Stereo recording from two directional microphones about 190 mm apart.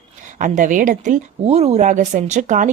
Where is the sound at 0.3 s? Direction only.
40° right (ahead or behind).